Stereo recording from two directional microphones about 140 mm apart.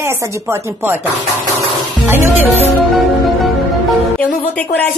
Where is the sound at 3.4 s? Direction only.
Centre (ahead or behind).